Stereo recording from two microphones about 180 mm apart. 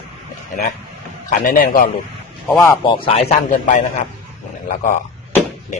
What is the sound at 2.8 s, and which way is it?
A man's voice, 30° left (ahead or behind).